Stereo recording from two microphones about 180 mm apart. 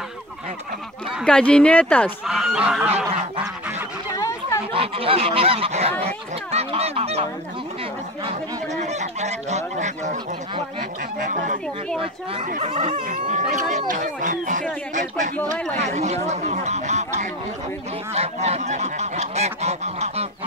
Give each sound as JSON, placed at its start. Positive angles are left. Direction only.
{"t": 1.1, "sound": "speech", "side_deg": 5}
{"t": 2.2, "sound": "goose", "side_deg": 0}
{"t": 4.2, "sound": "chatter", "side_deg": 15}
{"t": 4.7, "sound": "goose", "side_deg": -30}
{"t": 10.8, "sound": "speech", "side_deg": -45}
{"t": 12.0, "sound": "goose", "side_deg": -30}
{"t": 12.6, "sound": "a sound", "side_deg": -30}
{"t": 13.0, "sound": "speech", "side_deg": -45}
{"t": 15.7, "sound": "goose", "side_deg": -40}